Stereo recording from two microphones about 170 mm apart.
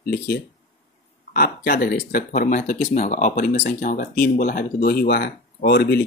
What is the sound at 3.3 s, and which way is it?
Speech, 60° left (ahead or behind).